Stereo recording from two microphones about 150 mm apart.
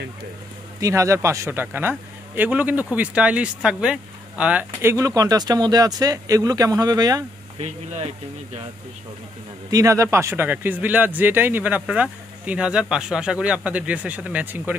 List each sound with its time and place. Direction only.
0.7 s a man's voice: 20° right (ahead or behind)
4.9 s speech: 25° right (ahead or behind)
7.5 s speech: 45° right (ahead or behind)
9.7 s a man's voice: 20° right (ahead or behind)